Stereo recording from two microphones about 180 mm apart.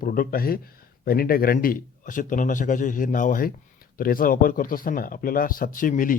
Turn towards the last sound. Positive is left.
turn(degrees=50)  # may be behind; listen again after turning